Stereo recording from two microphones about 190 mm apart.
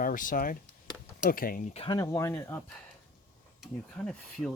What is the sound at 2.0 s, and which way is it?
Speech, 15° left (ahead or behind).